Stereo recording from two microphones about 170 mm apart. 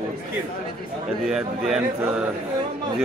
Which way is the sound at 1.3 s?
5° right (ahead or behind).